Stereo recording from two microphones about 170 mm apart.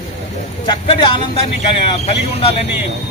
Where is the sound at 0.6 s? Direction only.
25° left (ahead or behind).